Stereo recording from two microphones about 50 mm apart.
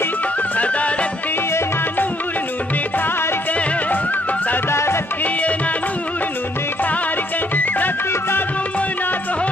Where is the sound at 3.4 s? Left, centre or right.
Left.